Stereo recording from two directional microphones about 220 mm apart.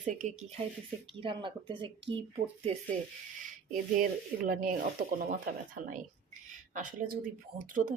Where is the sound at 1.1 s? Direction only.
20° right (ahead or behind).